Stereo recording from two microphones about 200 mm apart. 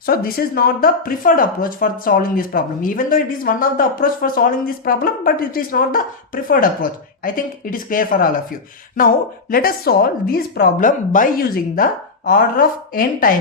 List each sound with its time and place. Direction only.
0.0 s speech: 45° left (ahead or behind)